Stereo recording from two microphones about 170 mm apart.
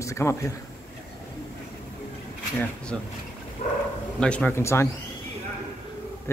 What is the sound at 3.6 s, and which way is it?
Speech, 45° left (ahead or behind).